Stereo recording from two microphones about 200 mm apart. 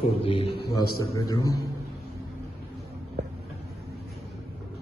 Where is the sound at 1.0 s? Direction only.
15° left (ahead or behind).